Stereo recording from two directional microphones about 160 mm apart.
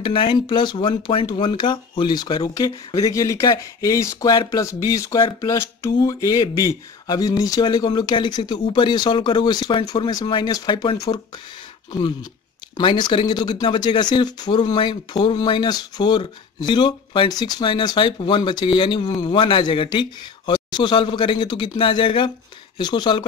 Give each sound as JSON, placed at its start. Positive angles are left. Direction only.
{"t": 0.0, "sound": "speech", "side_deg": 30}
{"t": 12.7, "sound": "speech", "side_deg": 30}